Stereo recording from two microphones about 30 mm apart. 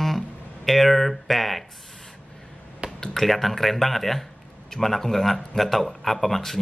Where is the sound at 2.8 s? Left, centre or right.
Right.